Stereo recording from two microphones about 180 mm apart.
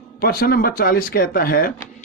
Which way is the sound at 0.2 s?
55° left (ahead or behind).